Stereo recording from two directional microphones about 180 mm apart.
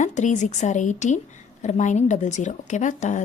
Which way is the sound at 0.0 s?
40° left (ahead or behind).